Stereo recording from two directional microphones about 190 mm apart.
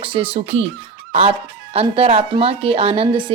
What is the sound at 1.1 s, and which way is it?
Music, 30° right (ahead or behind).